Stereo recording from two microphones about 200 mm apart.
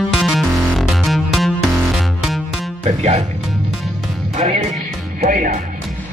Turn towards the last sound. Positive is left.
turn(degrees=-40)  # may be behind; listen again after turning